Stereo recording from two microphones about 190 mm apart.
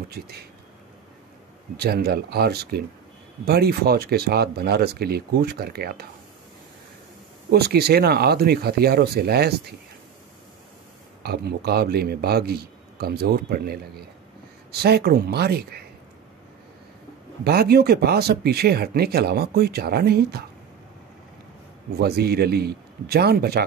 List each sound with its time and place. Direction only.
0.1 s speech: 55° right (ahead or behind)
1.8 s speech: 55° right (ahead or behind)
7.5 s speech: 55° right (ahead or behind)
11.2 s speech: 55° right (ahead or behind)
17.4 s speech: 55° right (ahead or behind)
21.9 s speech: 55° right (ahead or behind)